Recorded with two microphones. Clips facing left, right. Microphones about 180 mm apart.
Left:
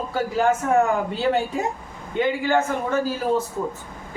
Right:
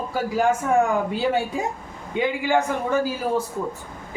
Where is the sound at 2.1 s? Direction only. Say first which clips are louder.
Left 1 dB; 15° right (ahead or behind).